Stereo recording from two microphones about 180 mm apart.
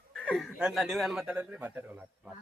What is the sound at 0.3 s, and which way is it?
Speech, centre (ahead or behind).